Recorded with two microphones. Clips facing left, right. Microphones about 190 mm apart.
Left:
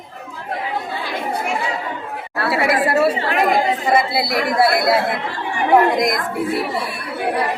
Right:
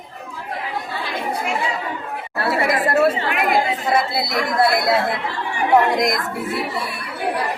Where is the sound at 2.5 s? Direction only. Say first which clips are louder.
Left 2 dB; 5° left (ahead or behind).